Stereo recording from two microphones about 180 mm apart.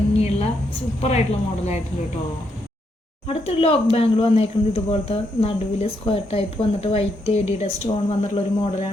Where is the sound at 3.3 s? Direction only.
30° left (ahead or behind).